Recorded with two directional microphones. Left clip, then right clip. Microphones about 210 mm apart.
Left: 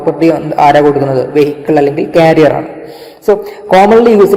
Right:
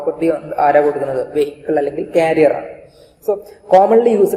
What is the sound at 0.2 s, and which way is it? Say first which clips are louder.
A woman's voice: left 8 dB; 25° left (ahead or behind).